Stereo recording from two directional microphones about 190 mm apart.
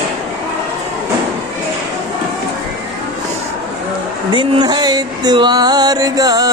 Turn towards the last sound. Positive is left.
turn(degrees=-20)  # may be behind; listen again after turning